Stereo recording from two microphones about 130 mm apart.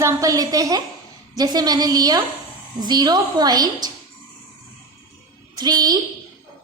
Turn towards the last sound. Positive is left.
turn(degrees=-30)  # may be behind; listen again after turning